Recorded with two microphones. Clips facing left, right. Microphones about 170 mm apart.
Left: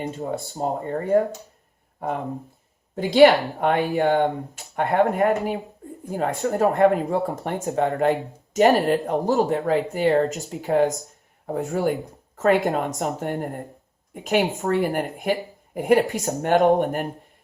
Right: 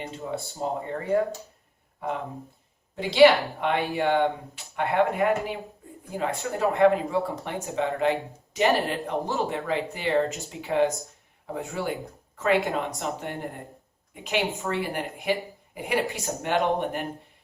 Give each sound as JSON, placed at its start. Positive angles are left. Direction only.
{"t": 0.0, "sound": "speech", "side_deg": 45}
{"t": 2.9, "sound": "a woman's voice", "side_deg": 45}
{"t": 10.2, "sound": "speech", "side_deg": 0}
{"t": 10.6, "sound": "a woman's voice", "side_deg": 40}